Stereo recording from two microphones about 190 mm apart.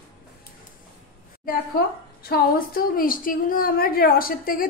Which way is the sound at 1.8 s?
55° left (ahead or behind).